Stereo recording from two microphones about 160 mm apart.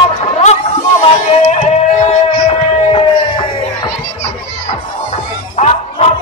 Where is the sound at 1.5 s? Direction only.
45° left (ahead or behind).